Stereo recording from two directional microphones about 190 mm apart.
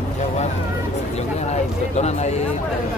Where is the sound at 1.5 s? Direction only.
35° left (ahead or behind).